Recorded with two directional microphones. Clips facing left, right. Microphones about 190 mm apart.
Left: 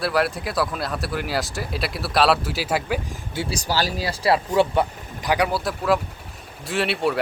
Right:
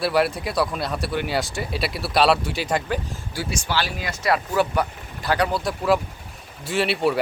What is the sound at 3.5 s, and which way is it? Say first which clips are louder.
Speech: left 2 dB; 40° left (ahead or behind).